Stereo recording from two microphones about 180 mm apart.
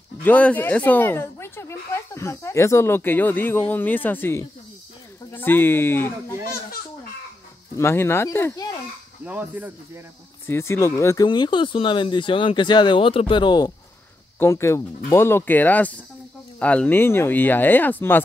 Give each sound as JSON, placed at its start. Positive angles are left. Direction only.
{"t": 0.2, "sound": "speech", "side_deg": 10}
{"t": 7.7, "sound": "speech", "side_deg": 15}
{"t": 9.2, "sound": "speech", "side_deg": -10}
{"t": 10.4, "sound": "speech", "side_deg": 15}
{"t": 11.2, "sound": "speech", "side_deg": 25}